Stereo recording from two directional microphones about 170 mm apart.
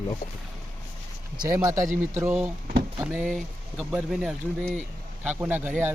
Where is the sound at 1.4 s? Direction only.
15° right (ahead or behind).